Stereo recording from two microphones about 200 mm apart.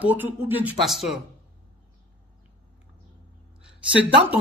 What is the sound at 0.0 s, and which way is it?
Speech, 10° right (ahead or behind).